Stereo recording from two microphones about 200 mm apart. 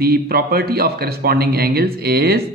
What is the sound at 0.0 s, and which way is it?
Speech, 50° right (ahead or behind).